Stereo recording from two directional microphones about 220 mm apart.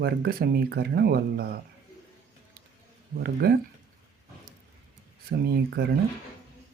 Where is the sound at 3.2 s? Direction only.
45° right (ahead or behind).